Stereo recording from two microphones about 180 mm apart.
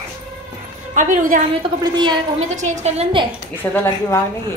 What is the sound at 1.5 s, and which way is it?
Speech, 25° right (ahead or behind).